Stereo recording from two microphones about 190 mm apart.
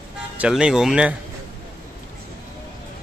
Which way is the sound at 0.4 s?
5° right (ahead or behind).